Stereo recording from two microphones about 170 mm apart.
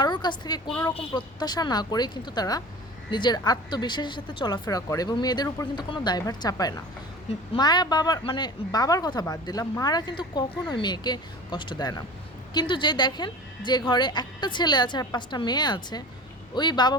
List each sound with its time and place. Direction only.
0.0 s a woman's voice: 25° left (ahead or behind)